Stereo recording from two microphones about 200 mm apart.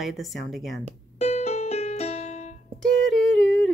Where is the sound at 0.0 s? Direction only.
Centre (ahead or behind).